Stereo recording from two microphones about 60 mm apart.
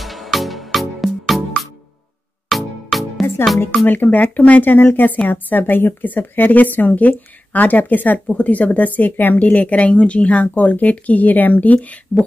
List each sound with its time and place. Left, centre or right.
0.0 s music: centre
2.5 s music: centre
3.8 s a woman's voice: left